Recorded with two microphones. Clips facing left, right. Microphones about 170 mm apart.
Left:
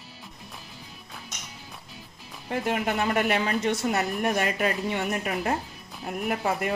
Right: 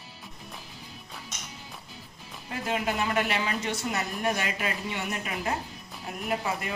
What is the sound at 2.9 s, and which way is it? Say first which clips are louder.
Speech: left 3 dB; 50° left (ahead or behind).